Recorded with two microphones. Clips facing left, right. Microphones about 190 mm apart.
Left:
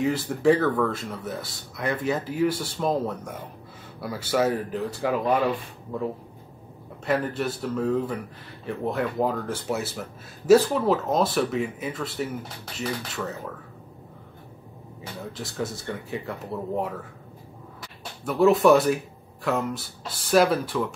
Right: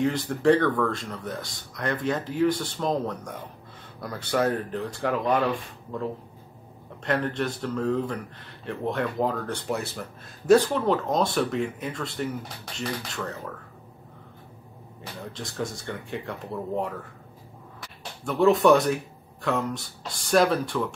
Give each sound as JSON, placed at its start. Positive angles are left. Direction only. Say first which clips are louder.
{"t": 0.0, "sound": "speech", "louder": "left 1 dB", "side_deg": 5}
{"t": 7.1, "sound": "speech", "louder": "left 1 dB", "side_deg": 5}
{"t": 15.3, "sound": "speech", "louder": "left 1 dB", "side_deg": 5}
{"t": 18.2, "sound": "speech", "louder": "left 1 dB", "side_deg": 0}